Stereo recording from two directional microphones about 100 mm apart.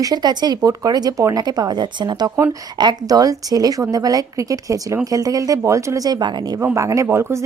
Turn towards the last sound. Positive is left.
turn(degrees=-30)  # may be behind; listen again after turning